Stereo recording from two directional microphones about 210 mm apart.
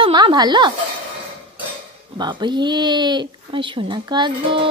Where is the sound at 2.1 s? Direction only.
20° right (ahead or behind).